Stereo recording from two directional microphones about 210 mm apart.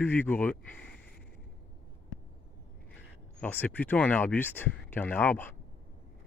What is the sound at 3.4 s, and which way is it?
Speech, 5° left (ahead or behind).